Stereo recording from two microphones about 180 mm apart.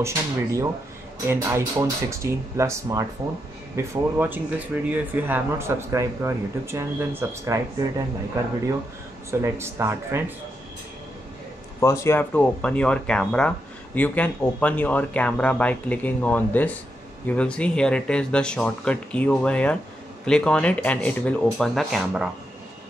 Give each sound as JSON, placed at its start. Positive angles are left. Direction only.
{"t": 0.0, "sound": "speech", "side_deg": -15}
{"t": 11.8, "sound": "speech", "side_deg": 15}